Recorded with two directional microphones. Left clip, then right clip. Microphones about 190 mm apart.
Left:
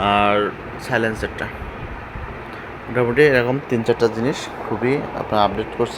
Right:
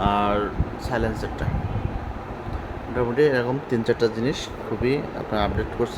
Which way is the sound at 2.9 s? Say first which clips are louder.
Left 6 dB; 15° left (ahead or behind).